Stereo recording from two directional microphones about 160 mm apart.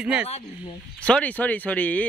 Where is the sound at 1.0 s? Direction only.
10° left (ahead or behind).